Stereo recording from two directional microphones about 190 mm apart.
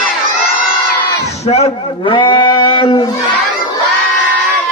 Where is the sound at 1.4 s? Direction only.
35° left (ahead or behind).